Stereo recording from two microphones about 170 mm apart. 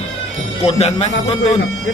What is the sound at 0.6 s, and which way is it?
Speech, 40° left (ahead or behind).